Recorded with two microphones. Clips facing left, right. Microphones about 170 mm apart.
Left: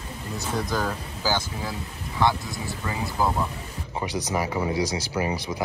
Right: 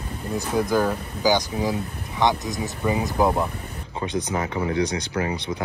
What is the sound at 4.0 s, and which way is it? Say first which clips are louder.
Speech: right 2 dB; 15° left (ahead or behind).